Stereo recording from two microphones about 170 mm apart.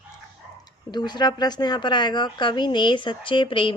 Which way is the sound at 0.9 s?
25° left (ahead or behind).